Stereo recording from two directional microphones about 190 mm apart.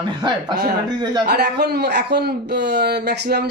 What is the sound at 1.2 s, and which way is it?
A man's voice, 60° right (ahead or behind).